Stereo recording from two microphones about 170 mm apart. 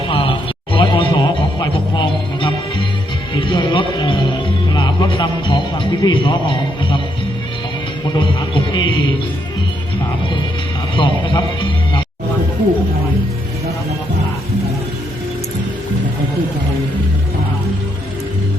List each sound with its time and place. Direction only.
0.1 s music: 30° left (ahead or behind)
8.0 s music: 25° left (ahead or behind)
10.9 s music: 30° left (ahead or behind)